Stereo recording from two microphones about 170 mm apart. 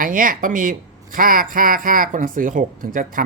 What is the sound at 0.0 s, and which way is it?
Speech, 55° right (ahead or behind).